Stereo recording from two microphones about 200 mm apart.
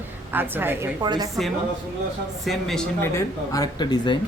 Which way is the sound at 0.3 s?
10° right (ahead or behind).